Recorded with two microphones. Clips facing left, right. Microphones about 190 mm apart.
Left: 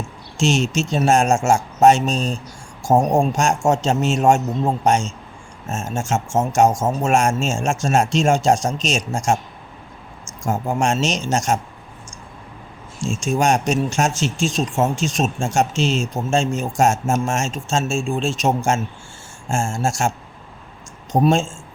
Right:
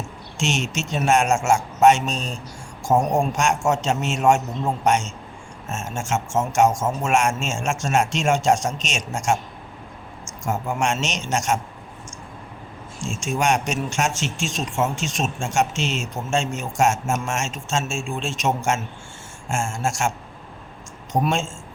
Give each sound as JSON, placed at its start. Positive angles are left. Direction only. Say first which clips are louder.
{"t": 0.3, "sound": "speech", "louder": "left 6 dB", "side_deg": 35}
{"t": 13.0, "sound": "speech", "louder": "left 4 dB", "side_deg": 35}